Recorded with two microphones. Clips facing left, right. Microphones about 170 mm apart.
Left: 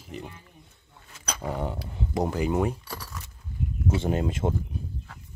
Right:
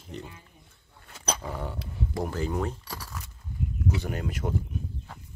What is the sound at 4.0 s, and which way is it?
Speech, 25° left (ahead or behind).